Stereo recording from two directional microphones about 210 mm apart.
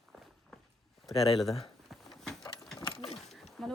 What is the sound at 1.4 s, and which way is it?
Speech, centre (ahead or behind).